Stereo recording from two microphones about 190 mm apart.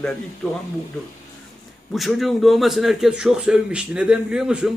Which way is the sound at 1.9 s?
Centre (ahead or behind).